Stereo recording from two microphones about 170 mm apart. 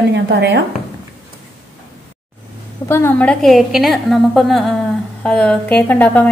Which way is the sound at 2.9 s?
15° left (ahead or behind).